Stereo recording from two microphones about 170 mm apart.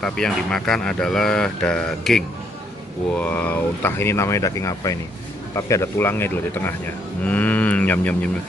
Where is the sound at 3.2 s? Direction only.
10° left (ahead or behind).